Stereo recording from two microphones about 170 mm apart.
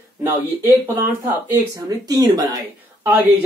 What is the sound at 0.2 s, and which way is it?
Speech, 10° right (ahead or behind).